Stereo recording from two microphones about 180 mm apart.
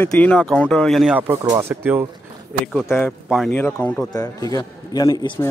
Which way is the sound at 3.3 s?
Centre (ahead or behind).